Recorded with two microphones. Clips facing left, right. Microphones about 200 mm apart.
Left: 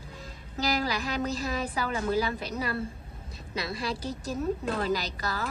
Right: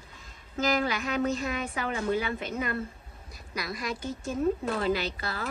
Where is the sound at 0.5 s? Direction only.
35° left (ahead or behind).